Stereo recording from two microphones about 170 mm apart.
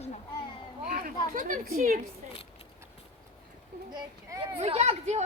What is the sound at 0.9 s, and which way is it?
Speech, 60° right (ahead or behind).